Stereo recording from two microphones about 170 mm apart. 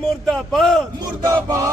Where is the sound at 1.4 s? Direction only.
20° right (ahead or behind).